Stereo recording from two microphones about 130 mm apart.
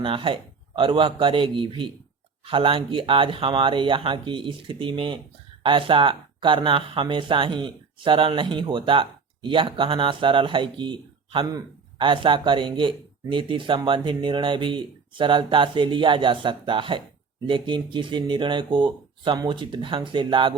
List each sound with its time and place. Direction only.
0.0 s a man's voice: 40° right (ahead or behind)